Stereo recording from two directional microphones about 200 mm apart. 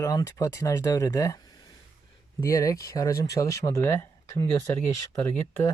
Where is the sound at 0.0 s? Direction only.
15° left (ahead or behind).